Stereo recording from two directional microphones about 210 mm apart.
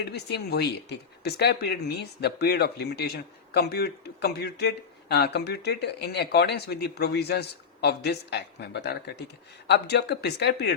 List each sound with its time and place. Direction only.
0.0 s speech: 50° left (ahead or behind)